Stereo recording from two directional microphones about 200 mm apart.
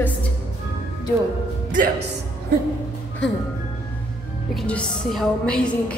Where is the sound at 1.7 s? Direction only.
40° right (ahead or behind).